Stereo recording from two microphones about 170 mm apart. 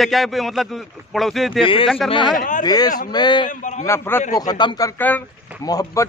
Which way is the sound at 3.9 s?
15° left (ahead or behind).